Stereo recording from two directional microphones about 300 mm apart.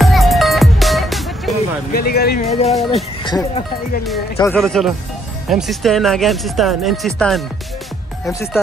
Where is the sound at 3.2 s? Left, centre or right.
Centre.